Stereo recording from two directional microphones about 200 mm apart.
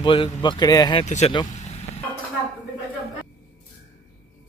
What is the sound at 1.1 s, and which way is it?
Speech, 35° left (ahead or behind).